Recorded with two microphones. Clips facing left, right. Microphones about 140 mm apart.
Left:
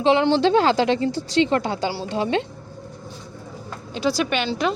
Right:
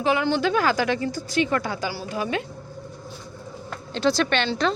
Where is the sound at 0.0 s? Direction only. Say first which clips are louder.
Left 5 dB; 25° left (ahead or behind).